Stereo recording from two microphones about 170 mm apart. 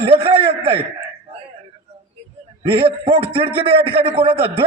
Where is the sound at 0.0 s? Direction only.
35° right (ahead or behind).